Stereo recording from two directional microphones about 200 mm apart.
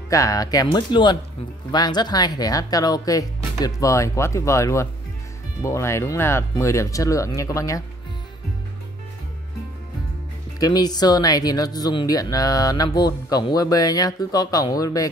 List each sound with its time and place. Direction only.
0.1 s speech: 15° left (ahead or behind)
10.6 s speech: 20° left (ahead or behind)